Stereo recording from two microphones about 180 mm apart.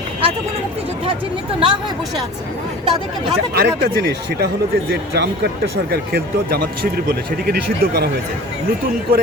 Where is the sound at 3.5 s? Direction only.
60° right (ahead or behind).